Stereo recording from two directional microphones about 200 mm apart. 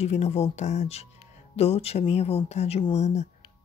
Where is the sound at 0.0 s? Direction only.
30° left (ahead or behind).